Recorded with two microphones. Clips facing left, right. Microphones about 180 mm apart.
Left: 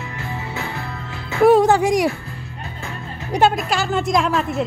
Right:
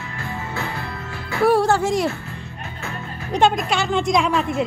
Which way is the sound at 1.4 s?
20° left (ahead or behind).